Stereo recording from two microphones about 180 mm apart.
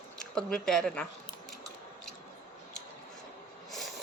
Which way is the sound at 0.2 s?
5° left (ahead or behind).